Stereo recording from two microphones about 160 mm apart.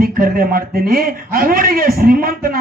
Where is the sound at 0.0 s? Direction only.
65° right (ahead or behind).